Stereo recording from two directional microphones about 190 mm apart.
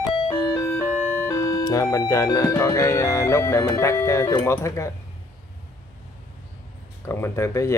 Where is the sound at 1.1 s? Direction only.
15° left (ahead or behind).